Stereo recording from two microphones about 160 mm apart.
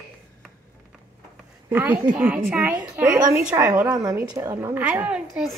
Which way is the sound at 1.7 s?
15° right (ahead or behind).